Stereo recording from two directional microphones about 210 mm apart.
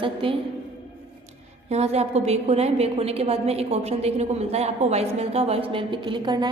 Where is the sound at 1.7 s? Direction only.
30° right (ahead or behind).